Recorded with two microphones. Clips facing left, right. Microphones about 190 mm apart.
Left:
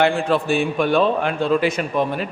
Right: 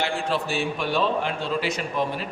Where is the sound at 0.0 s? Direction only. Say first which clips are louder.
Left 8 dB; 55° left (ahead or behind).